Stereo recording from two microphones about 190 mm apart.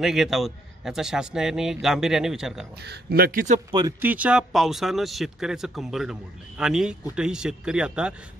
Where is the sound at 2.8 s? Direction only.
55° right (ahead or behind).